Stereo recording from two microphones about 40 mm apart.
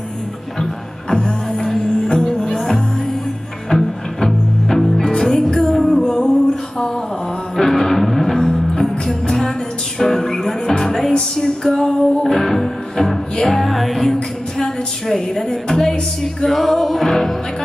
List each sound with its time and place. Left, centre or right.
1.1 s music: centre
7.5 s music: centre